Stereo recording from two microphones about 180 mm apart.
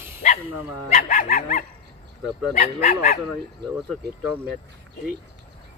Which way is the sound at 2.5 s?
35° left (ahead or behind).